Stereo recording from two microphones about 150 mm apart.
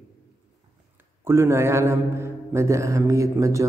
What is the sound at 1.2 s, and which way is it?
A man's voice, 15° right (ahead or behind).